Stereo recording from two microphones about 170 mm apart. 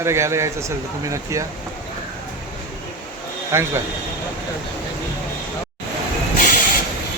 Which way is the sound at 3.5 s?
15° right (ahead or behind).